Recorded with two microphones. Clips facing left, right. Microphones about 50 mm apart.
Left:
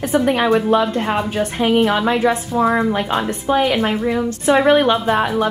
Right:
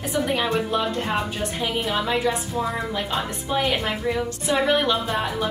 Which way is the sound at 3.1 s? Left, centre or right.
Left.